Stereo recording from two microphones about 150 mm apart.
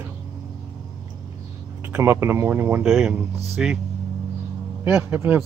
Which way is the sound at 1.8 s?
15° right (ahead or behind).